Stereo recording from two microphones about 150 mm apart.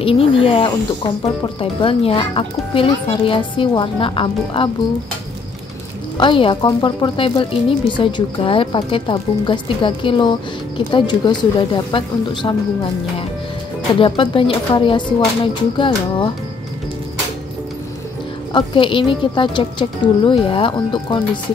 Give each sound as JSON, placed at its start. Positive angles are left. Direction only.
{"t": 0.0, "sound": "speech", "side_deg": 40}
{"t": 6.1, "sound": "speech", "side_deg": 35}
{"t": 13.9, "sound": "speech", "side_deg": 35}
{"t": 18.5, "sound": "speech", "side_deg": 35}